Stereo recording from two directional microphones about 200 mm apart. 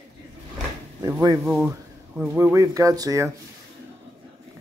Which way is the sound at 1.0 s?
20° right (ahead or behind).